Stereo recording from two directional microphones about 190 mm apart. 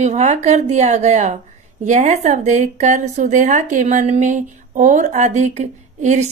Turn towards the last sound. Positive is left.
turn(degrees=-40)  # may be behind; listen again after turning